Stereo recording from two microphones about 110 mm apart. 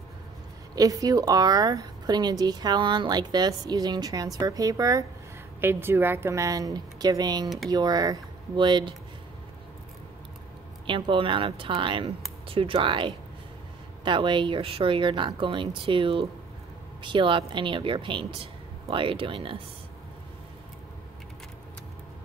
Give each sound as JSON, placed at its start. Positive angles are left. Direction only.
{"t": 0.7, "sound": "speech", "side_deg": -35}
{"t": 5.6, "sound": "a woman's voice", "side_deg": -20}
{"t": 7.4, "sound": "speech", "side_deg": 0}
{"t": 7.7, "sound": "speech", "side_deg": -40}
{"t": 10.9, "sound": "speech", "side_deg": -50}